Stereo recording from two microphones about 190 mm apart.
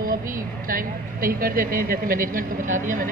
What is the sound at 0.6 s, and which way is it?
Speech, 50° right (ahead or behind).